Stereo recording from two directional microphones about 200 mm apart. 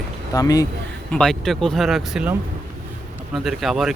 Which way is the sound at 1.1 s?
5° left (ahead or behind).